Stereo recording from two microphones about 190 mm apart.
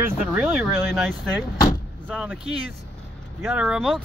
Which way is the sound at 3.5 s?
5° right (ahead or behind).